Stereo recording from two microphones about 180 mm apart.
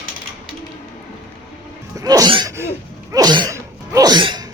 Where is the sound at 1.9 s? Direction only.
20° right (ahead or behind).